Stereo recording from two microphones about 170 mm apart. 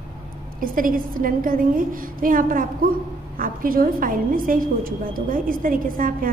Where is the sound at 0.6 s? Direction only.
55° right (ahead or behind).